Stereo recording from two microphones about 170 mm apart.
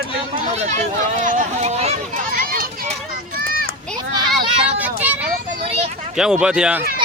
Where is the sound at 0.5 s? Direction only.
40° right (ahead or behind).